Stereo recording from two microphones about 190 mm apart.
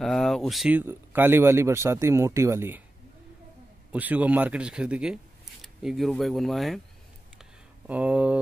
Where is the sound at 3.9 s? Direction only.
10° right (ahead or behind).